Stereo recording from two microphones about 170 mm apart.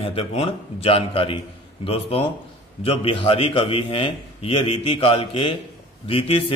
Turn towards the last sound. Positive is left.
turn(degrees=35)  # may be behind; listen again after turning